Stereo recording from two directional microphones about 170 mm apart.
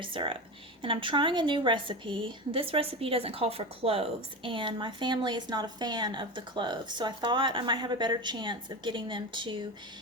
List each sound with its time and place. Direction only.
0.0 s a woman's voice: 30° right (ahead or behind)